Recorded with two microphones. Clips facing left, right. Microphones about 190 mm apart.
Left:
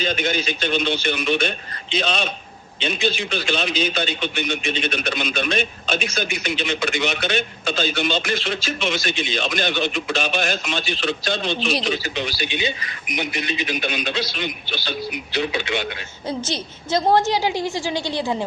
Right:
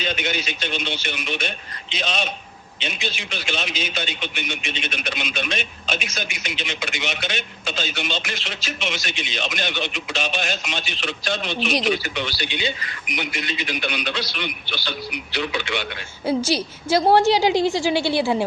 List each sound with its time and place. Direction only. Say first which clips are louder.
0.0 s a man's voice: left 4 dB; 40° left (ahead or behind)
12.4 s a man's voice: left 2 dB; 20° left (ahead or behind)
16.5 s a woman's voice: right 3 dB; 10° right (ahead or behind)